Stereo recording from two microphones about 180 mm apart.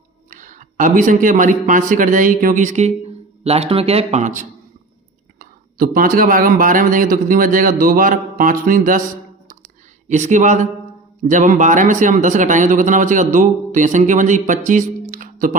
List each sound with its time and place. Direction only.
0.3 s a man's voice: 45° right (ahead or behind)
5.4 s speech: 55° right (ahead or behind)
10.1 s speech: 40° right (ahead or behind)